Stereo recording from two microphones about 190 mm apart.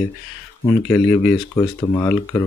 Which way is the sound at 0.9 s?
5° left (ahead or behind).